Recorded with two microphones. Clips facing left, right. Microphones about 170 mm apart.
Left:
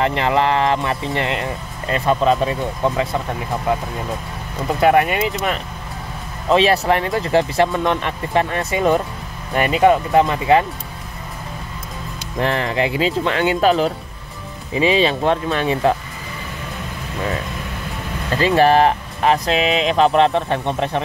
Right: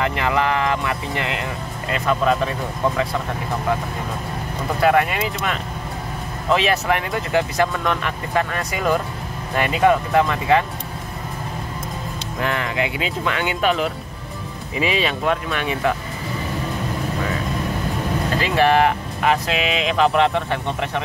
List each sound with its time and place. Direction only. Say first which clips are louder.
0.0 s speech: left 3 dB; 30° left (ahead or behind)
4.8 s speech: left 3 dB; 25° left (ahead or behind)
6.5 s speech: left 4 dB; 30° left (ahead or behind)
12.4 s speech: left 4 dB; 35° left (ahead or behind)
18.4 s speech: left 4 dB; 35° left (ahead or behind)